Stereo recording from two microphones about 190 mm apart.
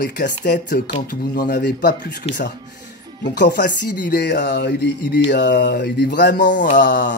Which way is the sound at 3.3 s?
65° left (ahead or behind).